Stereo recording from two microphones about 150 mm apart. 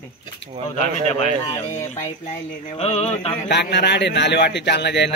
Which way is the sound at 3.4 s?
90° left.